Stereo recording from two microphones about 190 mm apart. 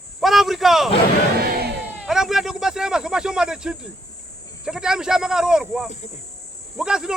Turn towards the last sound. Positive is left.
turn(degrees=-5)  # may be behind; listen again after turning